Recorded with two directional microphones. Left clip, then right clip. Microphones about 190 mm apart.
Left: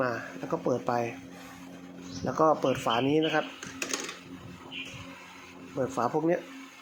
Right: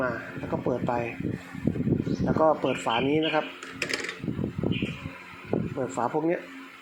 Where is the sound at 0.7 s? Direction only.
15° left (ahead or behind).